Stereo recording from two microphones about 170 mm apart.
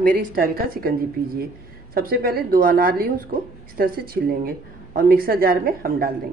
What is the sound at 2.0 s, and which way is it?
A woman's voice, 60° right (ahead or behind).